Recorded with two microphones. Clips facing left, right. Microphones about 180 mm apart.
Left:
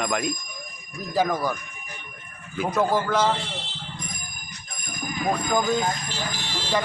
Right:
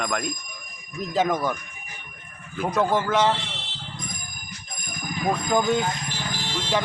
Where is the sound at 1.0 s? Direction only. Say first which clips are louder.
Even; 20° right (ahead or behind).